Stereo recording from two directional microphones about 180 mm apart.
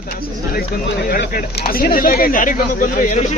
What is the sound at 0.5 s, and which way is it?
Speech, 55° left (ahead or behind).